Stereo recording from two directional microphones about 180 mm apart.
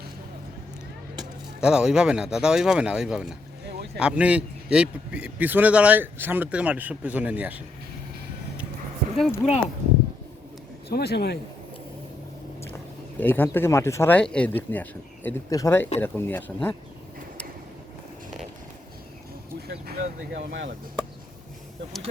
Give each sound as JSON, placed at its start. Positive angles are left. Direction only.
{"t": 1.6, "sound": "a man's voice", "side_deg": -5}
{"t": 9.1, "sound": "speech", "side_deg": 0}
{"t": 10.8, "sound": "speech", "side_deg": 60}
{"t": 13.1, "sound": "speech", "side_deg": 10}
{"t": 19.6, "sound": "vehicle", "side_deg": -60}